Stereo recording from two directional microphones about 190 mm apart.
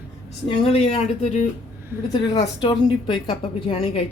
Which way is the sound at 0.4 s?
30° left (ahead or behind).